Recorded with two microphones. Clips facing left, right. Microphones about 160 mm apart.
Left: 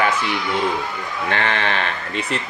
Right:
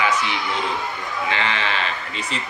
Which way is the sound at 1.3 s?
55° left (ahead or behind).